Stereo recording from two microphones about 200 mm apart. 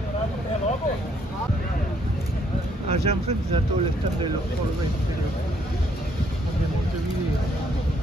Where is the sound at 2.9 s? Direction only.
30° right (ahead or behind).